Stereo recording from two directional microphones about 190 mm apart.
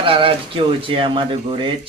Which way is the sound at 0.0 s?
25° right (ahead or behind).